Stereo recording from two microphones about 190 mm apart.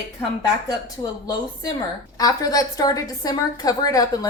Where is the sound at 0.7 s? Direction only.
20° left (ahead or behind).